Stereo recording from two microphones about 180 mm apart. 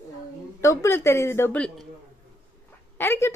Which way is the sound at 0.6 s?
15° left (ahead or behind).